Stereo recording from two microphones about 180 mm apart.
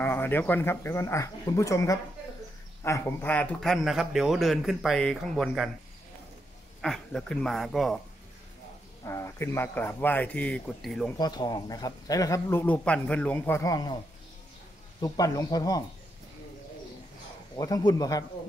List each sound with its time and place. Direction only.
0.0 s a man's voice: 10° left (ahead or behind)
6.8 s a man's voice: centre (ahead or behind)
9.0 s speech: 15° left (ahead or behind); by 11.1 s centre (ahead or behind)
11.1 s speech: 20° left (ahead or behind)
15.0 s speech: 20° left (ahead or behind)
17.6 s speech: 20° left (ahead or behind)